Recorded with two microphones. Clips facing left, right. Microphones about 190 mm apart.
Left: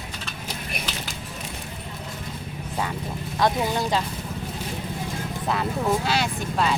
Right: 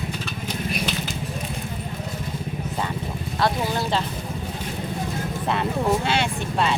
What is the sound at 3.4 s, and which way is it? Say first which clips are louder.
Speech: left 1 dB; 15° left (ahead or behind).